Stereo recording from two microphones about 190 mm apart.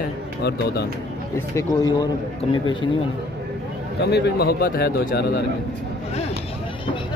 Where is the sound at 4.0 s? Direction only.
60° left (ahead or behind).